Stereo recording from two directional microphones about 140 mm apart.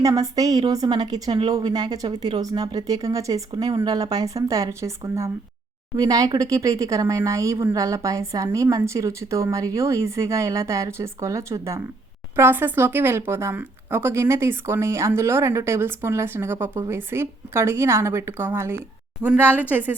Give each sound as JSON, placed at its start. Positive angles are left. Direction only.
{"t": 0.0, "sound": "a woman's voice", "side_deg": -25}